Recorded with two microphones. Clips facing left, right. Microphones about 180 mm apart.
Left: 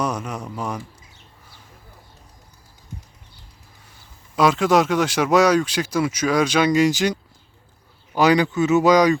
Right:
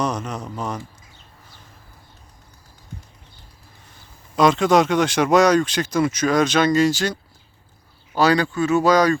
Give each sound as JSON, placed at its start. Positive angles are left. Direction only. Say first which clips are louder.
{"t": 0.0, "sound": "speech", "louder": "right 1 dB", "side_deg": 10}
{"t": 4.4, "sound": "speech", "louder": "right 1 dB", "side_deg": 5}